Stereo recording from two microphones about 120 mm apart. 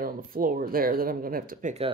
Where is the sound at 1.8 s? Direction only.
50° right (ahead or behind).